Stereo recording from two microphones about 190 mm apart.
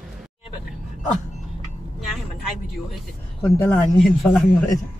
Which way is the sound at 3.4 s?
15° left (ahead or behind).